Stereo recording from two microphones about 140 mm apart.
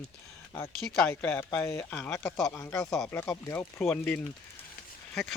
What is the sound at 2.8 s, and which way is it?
Speech, centre (ahead or behind).